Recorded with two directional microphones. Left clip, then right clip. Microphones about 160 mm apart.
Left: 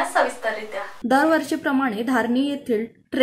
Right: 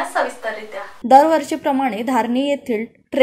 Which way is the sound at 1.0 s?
15° right (ahead or behind).